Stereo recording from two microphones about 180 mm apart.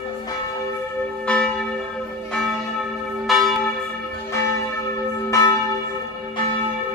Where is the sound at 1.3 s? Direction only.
5° left (ahead or behind).